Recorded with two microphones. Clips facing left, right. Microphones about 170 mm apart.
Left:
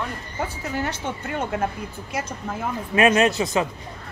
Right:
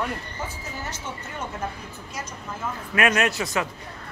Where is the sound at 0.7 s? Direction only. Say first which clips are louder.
Left 7 dB; 65° left (ahead or behind).